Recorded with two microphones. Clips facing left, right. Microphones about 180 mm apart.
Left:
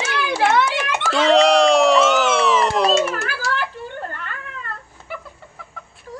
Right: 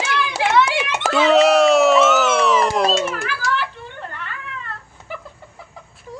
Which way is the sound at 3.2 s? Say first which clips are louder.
Right 1 dB; 40° left (ahead or behind).